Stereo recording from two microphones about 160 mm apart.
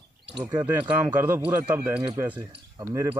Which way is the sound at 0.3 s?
10° right (ahead or behind).